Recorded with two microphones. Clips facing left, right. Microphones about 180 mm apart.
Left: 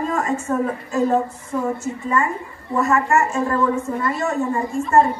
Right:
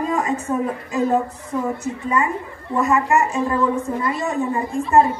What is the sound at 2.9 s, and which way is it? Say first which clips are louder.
A woman's voice: even; 15° right (ahead or behind).